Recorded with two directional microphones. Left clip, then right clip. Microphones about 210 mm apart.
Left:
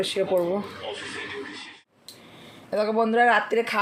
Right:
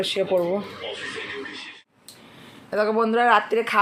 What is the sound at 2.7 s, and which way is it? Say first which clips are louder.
Speech: right 2 dB; 5° left (ahead or behind).